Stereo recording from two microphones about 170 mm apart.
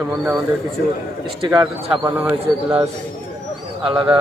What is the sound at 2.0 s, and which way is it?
Speech, 10° right (ahead or behind).